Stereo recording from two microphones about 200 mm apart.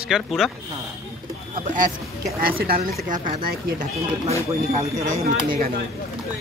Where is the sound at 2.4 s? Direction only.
50° right (ahead or behind).